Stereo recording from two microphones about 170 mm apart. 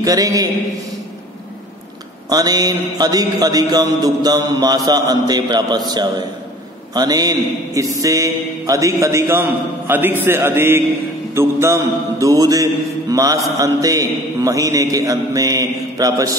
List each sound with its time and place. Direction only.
0.0 s mantra: 20° right (ahead or behind)
2.2 s mantra: 25° right (ahead or behind)
8.0 s a man's voice: 20° right (ahead or behind)
11.3 s mantra: 15° right (ahead or behind)